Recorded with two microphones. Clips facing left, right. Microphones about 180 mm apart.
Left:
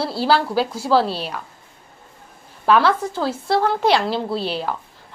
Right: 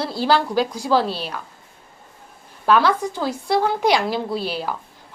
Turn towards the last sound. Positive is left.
turn(degrees=-10)  # may be behind; listen again after turning